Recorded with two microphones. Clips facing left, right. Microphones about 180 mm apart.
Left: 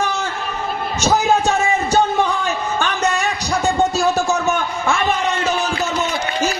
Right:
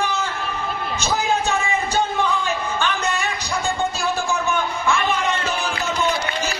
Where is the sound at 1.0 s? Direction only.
40° left (ahead or behind).